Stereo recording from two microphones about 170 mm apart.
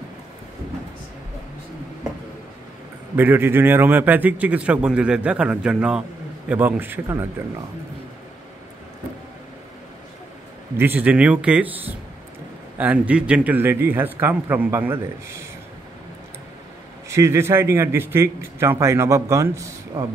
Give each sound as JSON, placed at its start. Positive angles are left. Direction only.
{"t": 3.2, "sound": "a man's voice", "side_deg": -10}
{"t": 10.8, "sound": "a man's voice", "side_deg": -10}
{"t": 17.1, "sound": "a man's voice", "side_deg": -15}